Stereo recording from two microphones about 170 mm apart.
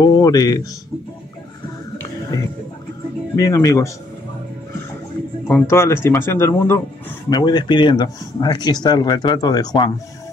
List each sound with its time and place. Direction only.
0.0 s speech: 20° left (ahead or behind)
3.3 s speech: 20° left (ahead or behind)
5.5 s speech: 15° left (ahead or behind)